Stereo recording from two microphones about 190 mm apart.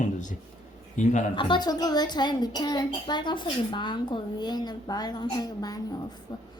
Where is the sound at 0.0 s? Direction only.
40° left (ahead or behind).